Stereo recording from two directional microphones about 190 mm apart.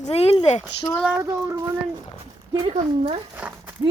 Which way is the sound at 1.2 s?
15° right (ahead or behind).